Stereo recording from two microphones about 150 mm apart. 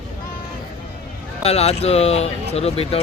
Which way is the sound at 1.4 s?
45° left (ahead or behind).